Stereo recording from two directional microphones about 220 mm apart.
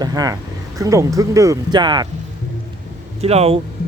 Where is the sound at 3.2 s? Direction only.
25° right (ahead or behind).